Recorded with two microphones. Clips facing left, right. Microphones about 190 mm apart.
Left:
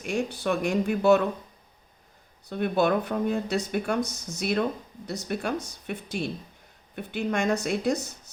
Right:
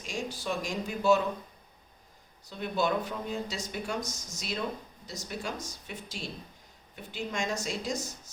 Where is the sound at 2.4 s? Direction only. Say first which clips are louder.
Left 6 dB; 60° left (ahead or behind).